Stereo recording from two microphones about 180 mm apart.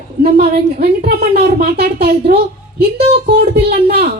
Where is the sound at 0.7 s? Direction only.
60° right (ahead or behind).